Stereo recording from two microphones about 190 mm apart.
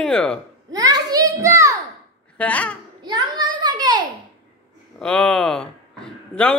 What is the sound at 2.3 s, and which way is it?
Speech, 5° left (ahead or behind).